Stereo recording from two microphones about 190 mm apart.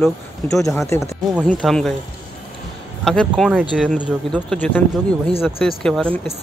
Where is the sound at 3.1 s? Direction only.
Centre (ahead or behind).